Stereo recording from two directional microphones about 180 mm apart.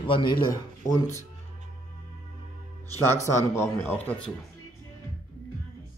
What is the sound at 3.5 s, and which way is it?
Speech, 10° left (ahead or behind).